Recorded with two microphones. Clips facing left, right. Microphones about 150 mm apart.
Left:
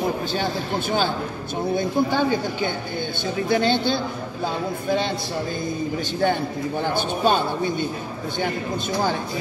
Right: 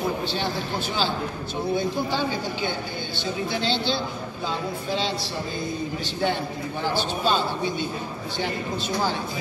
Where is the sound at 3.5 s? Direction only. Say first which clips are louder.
Left 7 dB; 50° left (ahead or behind).